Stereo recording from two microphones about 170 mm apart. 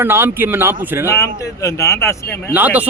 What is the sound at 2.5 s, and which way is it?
Speech, 10° right (ahead or behind).